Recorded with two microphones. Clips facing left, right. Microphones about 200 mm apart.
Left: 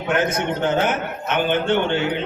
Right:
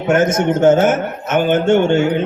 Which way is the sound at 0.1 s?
45° right (ahead or behind).